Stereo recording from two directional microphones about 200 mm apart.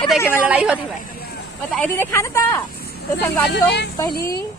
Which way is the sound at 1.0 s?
50° left (ahead or behind).